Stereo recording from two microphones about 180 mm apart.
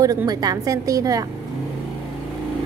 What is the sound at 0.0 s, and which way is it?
A woman's voice, 20° right (ahead or behind).